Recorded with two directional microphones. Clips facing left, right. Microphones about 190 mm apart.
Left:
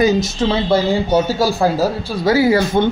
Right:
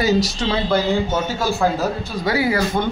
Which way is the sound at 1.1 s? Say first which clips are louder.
Left 6 dB; 35° left (ahead or behind).